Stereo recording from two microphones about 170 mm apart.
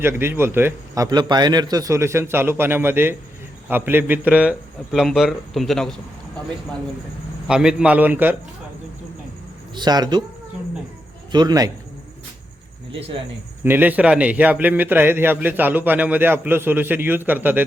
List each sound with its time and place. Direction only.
0.0 s a man's voice: 15° right (ahead or behind); by 5.9 s centre (ahead or behind)
7.4 s a man's voice: 5° right (ahead or behind)
9.7 s speech: 25° right (ahead or behind)
11.3 s speech: 25° right (ahead or behind)
13.7 s a man's voice: 10° right (ahead or behind)